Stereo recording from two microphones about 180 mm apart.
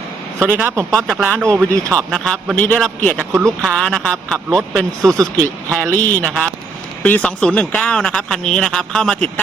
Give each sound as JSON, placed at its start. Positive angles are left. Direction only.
{"t": 0.3, "sound": "speech", "side_deg": -10}
{"t": 0.9, "sound": "a man's voice", "side_deg": 5}
{"t": 1.7, "sound": "speech", "side_deg": -15}
{"t": 2.0, "sound": "a man's voice", "side_deg": 5}
{"t": 5.0, "sound": "speech", "side_deg": -20}
{"t": 5.7, "sound": "a man's voice", "side_deg": 5}